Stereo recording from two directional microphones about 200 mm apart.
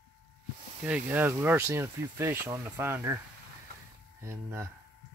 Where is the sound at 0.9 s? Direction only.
10° right (ahead or behind).